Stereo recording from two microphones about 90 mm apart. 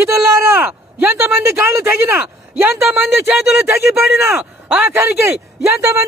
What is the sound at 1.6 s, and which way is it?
Speech, 25° right (ahead or behind).